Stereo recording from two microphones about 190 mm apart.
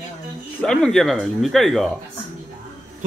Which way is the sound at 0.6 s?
5° left (ahead or behind).